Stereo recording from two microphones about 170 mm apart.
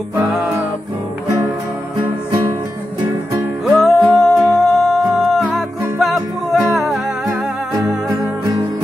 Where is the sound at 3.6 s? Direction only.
Centre (ahead or behind).